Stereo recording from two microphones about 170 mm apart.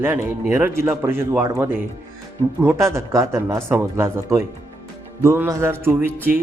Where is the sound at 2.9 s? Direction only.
15° right (ahead or behind).